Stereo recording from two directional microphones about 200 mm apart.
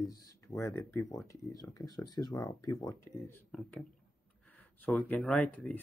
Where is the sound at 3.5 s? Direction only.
5° left (ahead or behind).